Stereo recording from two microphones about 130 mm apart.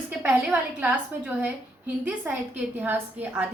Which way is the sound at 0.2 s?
10° right (ahead or behind).